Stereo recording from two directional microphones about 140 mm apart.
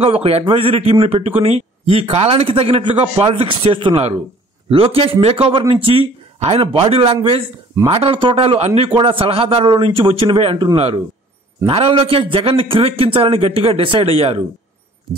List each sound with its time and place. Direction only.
0.0 s a man's voice: 45° right (ahead or behind)